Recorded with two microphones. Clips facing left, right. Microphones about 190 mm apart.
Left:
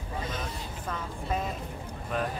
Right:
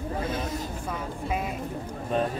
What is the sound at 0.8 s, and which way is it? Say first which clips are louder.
Speech: even; 10° right (ahead or behind).